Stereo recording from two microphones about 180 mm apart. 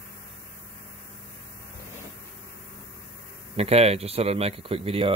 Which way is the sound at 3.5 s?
35° right (ahead or behind).